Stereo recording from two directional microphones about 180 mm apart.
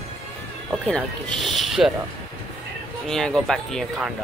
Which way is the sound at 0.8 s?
5° left (ahead or behind).